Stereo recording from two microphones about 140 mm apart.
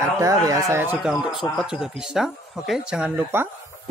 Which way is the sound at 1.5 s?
5° right (ahead or behind).